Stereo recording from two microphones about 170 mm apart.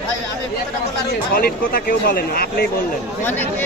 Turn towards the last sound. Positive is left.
turn(degrees=65)  # may be behind; listen again after turning